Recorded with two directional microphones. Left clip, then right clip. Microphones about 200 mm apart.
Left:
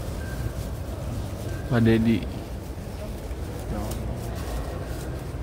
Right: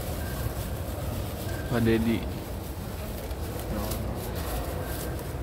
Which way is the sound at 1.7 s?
35° left (ahead or behind).